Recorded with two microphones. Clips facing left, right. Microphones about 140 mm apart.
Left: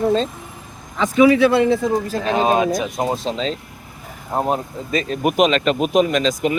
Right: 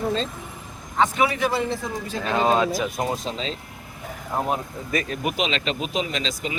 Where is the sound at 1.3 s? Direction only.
80° left.